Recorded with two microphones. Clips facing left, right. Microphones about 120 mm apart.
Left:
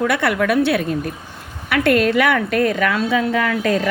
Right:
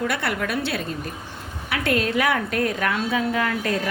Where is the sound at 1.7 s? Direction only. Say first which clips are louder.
Left 7 dB; 75° left (ahead or behind).